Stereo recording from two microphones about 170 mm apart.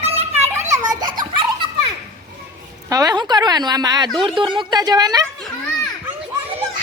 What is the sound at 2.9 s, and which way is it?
A woman's voice, 20° right (ahead or behind).